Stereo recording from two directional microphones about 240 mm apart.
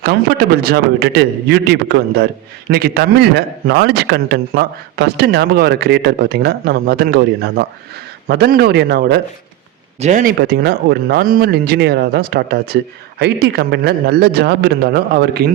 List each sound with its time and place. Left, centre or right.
0.0 s a man's voice: right
10.0 s a man's voice: right